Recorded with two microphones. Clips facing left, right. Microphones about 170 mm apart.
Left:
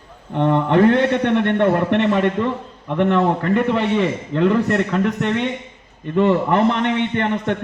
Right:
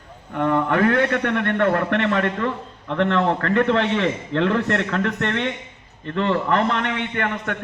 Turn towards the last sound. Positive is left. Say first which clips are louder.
# left 5 dB
turn(degrees=25)  # may be behind; listen again after turning